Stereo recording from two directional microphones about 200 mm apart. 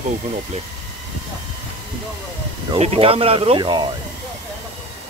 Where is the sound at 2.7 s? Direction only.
30° right (ahead or behind).